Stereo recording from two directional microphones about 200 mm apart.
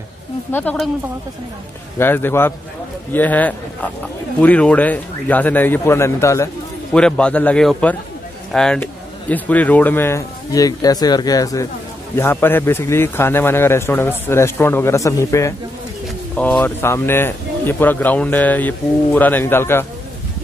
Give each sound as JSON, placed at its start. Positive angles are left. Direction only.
{"t": 0.5, "sound": "speech", "side_deg": 10}
{"t": 2.0, "sound": "speech", "side_deg": 10}
{"t": 6.9, "sound": "a man's voice", "side_deg": 5}